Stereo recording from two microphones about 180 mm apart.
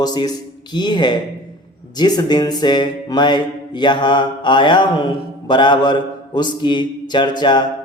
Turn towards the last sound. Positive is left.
turn(degrees=25)  # may be behind; listen again after turning